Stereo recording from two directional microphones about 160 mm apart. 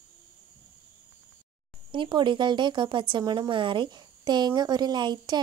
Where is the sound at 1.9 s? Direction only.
30° right (ahead or behind).